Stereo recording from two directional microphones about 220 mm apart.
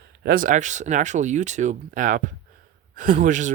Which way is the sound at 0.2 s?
40° right (ahead or behind).